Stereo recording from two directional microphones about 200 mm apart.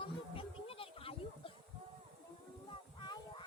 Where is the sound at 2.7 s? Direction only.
25° left (ahead or behind).